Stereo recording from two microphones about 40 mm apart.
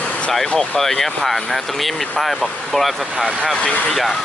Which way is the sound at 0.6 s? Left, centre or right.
Centre.